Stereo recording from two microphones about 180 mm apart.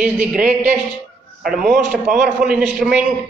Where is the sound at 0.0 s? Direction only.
5° right (ahead or behind).